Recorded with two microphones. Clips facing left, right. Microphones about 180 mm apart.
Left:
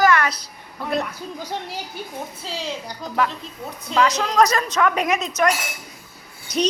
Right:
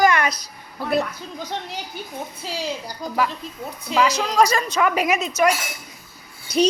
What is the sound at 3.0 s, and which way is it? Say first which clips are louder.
A woman's voice: even; centre (ahead or behind).